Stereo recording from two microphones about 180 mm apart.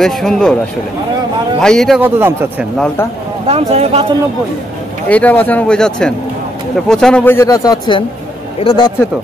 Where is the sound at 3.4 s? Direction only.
35° right (ahead or behind).